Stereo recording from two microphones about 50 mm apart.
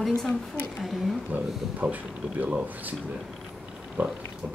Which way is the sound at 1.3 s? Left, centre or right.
Right.